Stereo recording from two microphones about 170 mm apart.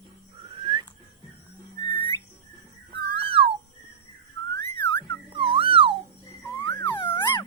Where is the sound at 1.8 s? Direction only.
25° left (ahead or behind).